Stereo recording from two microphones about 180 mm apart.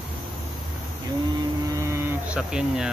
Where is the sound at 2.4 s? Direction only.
5° right (ahead or behind).